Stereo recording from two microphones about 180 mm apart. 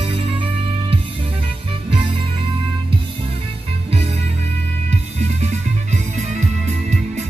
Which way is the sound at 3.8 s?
35° right (ahead or behind).